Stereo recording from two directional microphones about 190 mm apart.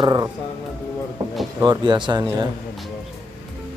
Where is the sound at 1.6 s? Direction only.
25° right (ahead or behind).